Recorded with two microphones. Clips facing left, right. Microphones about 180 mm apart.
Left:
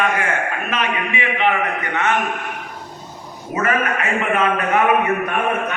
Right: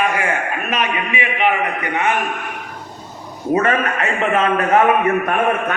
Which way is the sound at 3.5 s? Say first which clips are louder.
Right 2 dB; 35° right (ahead or behind).